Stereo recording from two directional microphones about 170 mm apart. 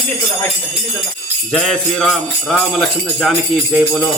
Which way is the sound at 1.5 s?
5° left (ahead or behind).